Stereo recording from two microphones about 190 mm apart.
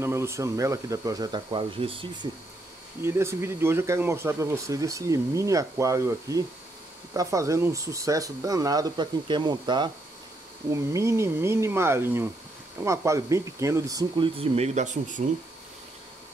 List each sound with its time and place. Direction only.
0.0 s speech: 15° right (ahead or behind)
3.0 s speech: 15° right (ahead or behind); by 15.2 s 40° right (ahead or behind)